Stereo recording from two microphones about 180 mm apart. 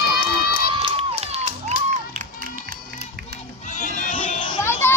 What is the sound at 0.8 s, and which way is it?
Crowd, 30° right (ahead or behind).